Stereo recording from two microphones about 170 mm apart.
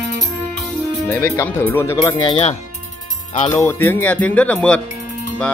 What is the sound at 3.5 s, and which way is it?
Speech, 15° left (ahead or behind).